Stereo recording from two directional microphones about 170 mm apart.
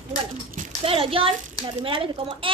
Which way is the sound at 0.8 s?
35° right (ahead or behind).